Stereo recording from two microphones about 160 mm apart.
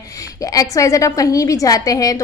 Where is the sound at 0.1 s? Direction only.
20° left (ahead or behind).